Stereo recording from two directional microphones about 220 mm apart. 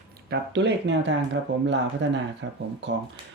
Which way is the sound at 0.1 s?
50° right (ahead or behind).